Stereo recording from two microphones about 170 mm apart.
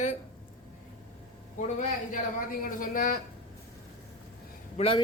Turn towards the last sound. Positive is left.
turn(degrees=35)  # may be behind; listen again after turning